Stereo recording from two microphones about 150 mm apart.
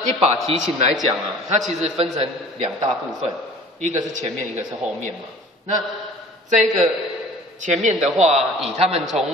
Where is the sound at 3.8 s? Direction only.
55° right (ahead or behind).